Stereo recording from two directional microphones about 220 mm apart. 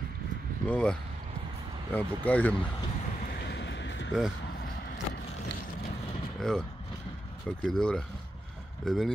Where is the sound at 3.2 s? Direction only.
45° left (ahead or behind).